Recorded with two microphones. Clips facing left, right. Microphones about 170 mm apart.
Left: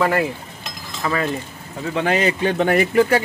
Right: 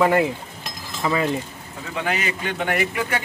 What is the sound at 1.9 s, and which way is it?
Speech, 35° left (ahead or behind).